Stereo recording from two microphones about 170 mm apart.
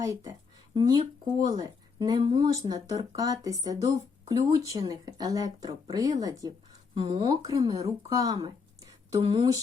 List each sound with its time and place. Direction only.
0.0 s speech: 20° right (ahead or behind)